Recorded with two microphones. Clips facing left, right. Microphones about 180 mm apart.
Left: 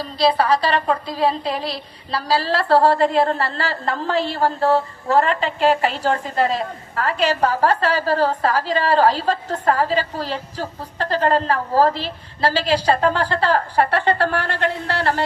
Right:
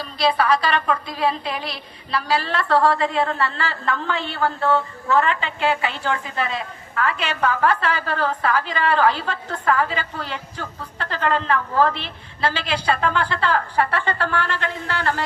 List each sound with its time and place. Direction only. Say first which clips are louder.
0.0 s a woman's voice: left 2 dB; 35° left (ahead or behind)